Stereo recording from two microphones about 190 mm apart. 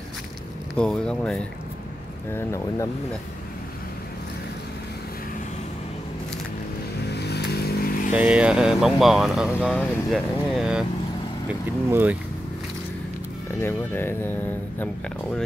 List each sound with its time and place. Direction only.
0.7 s speech: 5° left (ahead or behind)
2.3 s speech: 15° left (ahead or behind)
7.1 s vehicle: 60° left (ahead or behind)
8.1 s speech: 5° right (ahead or behind)
11.9 s speech: 10° right (ahead or behind)
13.6 s speech: 10° left (ahead or behind)